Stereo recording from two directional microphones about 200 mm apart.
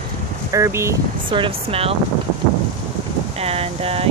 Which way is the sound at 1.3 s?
25° right (ahead or behind).